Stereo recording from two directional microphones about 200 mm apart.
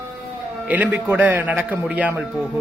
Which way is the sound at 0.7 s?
10° right (ahead or behind).